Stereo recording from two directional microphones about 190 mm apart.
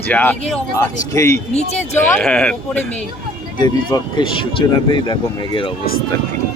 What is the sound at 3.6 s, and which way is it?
Speech, 25° left (ahead or behind).